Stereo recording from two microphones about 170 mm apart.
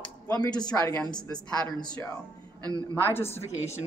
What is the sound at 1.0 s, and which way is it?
Speech, 25° left (ahead or behind).